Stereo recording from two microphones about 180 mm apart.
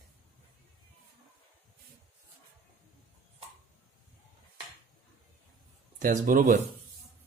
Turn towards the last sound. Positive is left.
turn(degrees=-50)  # may be behind; listen again after turning